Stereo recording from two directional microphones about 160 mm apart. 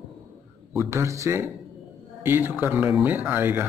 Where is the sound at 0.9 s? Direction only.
20° right (ahead or behind).